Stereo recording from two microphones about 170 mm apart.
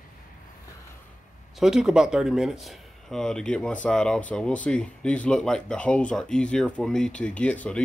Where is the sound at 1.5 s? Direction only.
Centre (ahead or behind).